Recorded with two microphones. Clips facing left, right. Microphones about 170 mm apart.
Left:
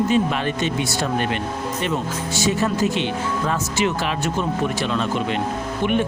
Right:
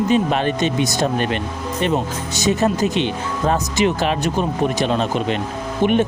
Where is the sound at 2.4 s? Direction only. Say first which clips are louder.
Right 3 dB; 20° right (ahead or behind).